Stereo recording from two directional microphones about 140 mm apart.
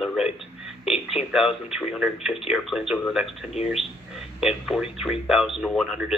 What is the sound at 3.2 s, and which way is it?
Speech, 50° left (ahead or behind).